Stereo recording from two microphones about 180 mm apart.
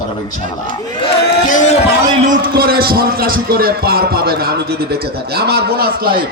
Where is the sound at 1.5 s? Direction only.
45° left (ahead or behind).